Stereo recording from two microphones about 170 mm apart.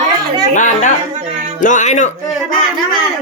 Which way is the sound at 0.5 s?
45° left (ahead or behind).